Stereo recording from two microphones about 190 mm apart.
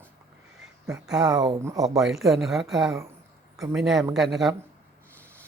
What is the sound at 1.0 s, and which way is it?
Speech, 5° right (ahead or behind).